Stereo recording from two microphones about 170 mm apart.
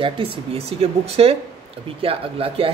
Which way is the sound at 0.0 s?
30° right (ahead or behind).